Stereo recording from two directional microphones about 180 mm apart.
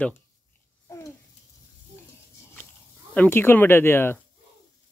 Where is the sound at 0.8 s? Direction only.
20° left (ahead or behind).